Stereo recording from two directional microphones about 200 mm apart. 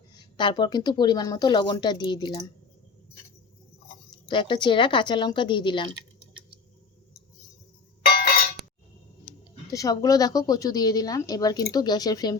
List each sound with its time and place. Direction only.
0.1 s speech: 20° left (ahead or behind)
4.1 s speech: 25° left (ahead or behind)
9.2 s speech: 15° left (ahead or behind)